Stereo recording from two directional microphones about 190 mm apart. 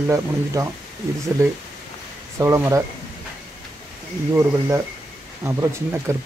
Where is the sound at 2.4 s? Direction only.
15° right (ahead or behind).